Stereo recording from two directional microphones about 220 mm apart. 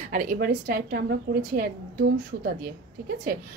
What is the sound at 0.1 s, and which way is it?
A woman's voice, 40° right (ahead or behind).